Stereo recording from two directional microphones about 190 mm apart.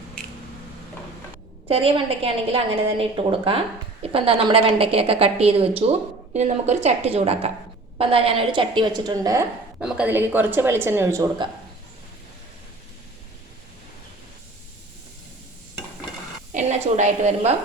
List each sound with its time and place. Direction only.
1.6 s a woman's voice: 30° right (ahead or behind)
16.5 s a woman's voice: 40° right (ahead or behind)